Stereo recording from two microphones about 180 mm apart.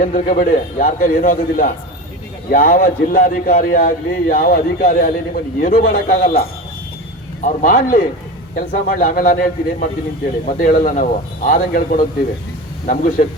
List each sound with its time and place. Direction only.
0.0 s a man's voice: 50° left (ahead or behind)
7.4 s a man's voice: 45° left (ahead or behind)